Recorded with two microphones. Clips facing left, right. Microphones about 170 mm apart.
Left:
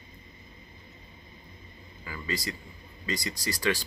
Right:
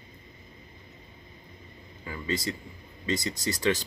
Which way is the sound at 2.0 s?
25° right (ahead or behind).